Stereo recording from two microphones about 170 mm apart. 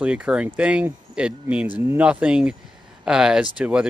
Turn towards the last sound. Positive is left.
turn(degrees=-5)  # may be behind; listen again after turning